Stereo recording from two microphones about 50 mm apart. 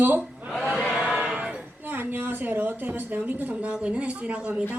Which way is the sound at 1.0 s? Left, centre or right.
Right.